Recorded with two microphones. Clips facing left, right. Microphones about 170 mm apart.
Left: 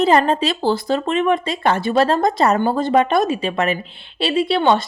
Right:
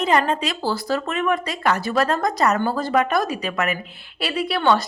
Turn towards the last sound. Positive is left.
turn(degrees=25)  # may be behind; listen again after turning